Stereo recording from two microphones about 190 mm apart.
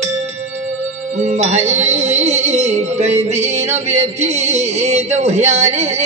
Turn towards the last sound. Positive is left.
turn(degrees=-35)  # may be behind; listen again after turning